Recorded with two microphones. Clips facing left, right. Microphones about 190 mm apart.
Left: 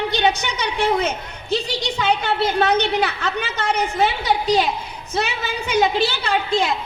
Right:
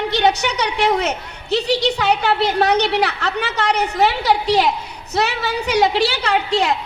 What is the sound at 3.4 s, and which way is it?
A woman's voice, 70° right (ahead or behind).